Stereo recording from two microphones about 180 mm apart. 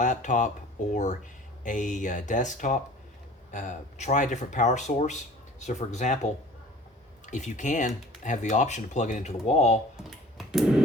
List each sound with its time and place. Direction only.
0.0 s speech: 45° left (ahead or behind)
1.6 s speech: 45° left (ahead or behind)
7.3 s speech: 45° left (ahead or behind)
10.3 s a sound: 5° right (ahead or behind)